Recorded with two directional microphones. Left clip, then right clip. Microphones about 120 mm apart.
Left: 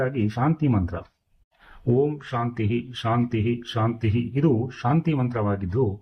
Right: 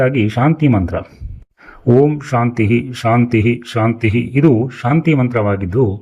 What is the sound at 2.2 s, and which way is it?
Speech, 35° right (ahead or behind).